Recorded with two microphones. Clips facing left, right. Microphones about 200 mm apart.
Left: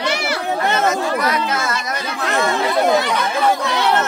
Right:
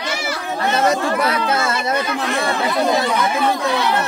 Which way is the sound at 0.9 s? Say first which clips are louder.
Right 1 dB; 30° right (ahead or behind).